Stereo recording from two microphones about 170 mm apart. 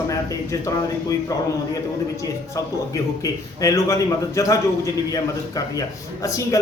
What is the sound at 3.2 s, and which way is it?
Speech, 20° left (ahead or behind).